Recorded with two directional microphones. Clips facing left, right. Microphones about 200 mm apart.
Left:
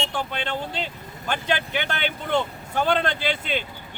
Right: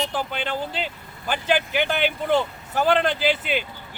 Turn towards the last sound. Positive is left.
turn(degrees=-5)  # may be behind; listen again after turning